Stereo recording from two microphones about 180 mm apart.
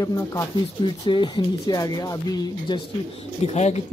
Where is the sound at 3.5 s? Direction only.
35° left (ahead or behind).